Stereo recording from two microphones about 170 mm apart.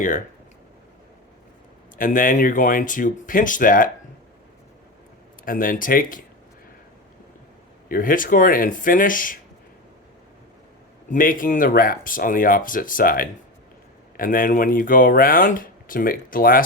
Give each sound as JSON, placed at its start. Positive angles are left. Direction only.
{"t": 2.0, "sound": "speech", "side_deg": 50}
{"t": 5.5, "sound": "speech", "side_deg": 55}
{"t": 7.9, "sound": "speech", "side_deg": 55}
{"t": 11.1, "sound": "speech", "side_deg": 55}